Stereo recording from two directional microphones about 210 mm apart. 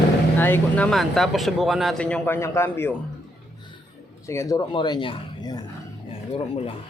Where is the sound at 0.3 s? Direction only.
10° left (ahead or behind).